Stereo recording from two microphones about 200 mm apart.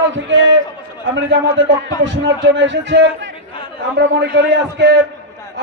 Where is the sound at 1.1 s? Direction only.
65° right (ahead or behind).